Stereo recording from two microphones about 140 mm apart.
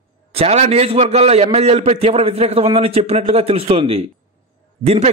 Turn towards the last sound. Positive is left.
turn(degrees=-50)  # may be behind; listen again after turning